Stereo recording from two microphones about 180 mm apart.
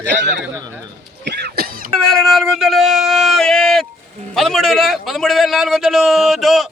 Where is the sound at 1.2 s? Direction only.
65° right (ahead or behind).